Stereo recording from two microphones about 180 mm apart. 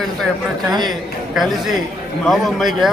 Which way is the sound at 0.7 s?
25° right (ahead or behind).